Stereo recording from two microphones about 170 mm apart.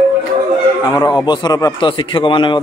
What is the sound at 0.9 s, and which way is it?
A man's voice, 25° left (ahead or behind).